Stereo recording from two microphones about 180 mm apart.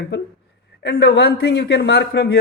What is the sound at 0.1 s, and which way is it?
A man's voice, 75° left (ahead or behind).